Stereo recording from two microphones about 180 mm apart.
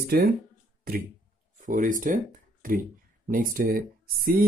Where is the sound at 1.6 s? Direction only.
45° right (ahead or behind).